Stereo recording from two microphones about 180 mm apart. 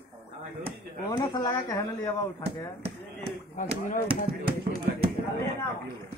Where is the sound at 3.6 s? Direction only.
50° left (ahead or behind).